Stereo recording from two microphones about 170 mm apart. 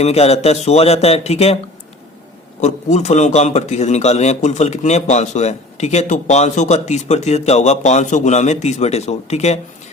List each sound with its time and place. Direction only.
0.0 s a man's voice: 40° left (ahead or behind)
2.6 s a man's voice: 40° left (ahead or behind)